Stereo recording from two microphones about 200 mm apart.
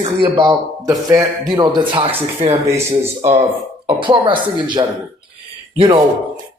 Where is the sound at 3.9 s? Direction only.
25° right (ahead or behind).